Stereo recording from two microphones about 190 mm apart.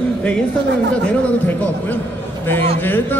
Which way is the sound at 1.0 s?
10° left (ahead or behind).